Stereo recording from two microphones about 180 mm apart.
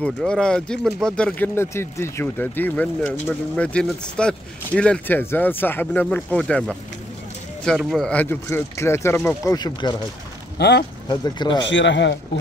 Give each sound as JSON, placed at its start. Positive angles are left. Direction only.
{"t": 0.0, "sound": "speech", "side_deg": 5}
{"t": 7.6, "sound": "speech", "side_deg": 0}
{"t": 10.6, "sound": "speech", "side_deg": 70}
{"t": 11.1, "sound": "speech", "side_deg": 25}
{"t": 11.7, "sound": "speech", "side_deg": 85}